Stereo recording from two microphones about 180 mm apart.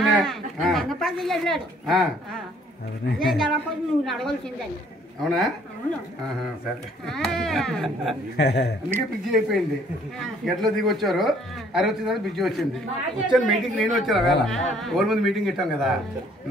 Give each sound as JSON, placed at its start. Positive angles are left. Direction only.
{"t": 0.0, "sound": "speech", "side_deg": 0}
{"t": 5.3, "sound": "speech", "side_deg": 0}
{"t": 7.1, "sound": "speech", "side_deg": 0}
{"t": 8.4, "sound": "a man's voice", "side_deg": 65}
{"t": 8.9, "sound": "speech", "side_deg": -5}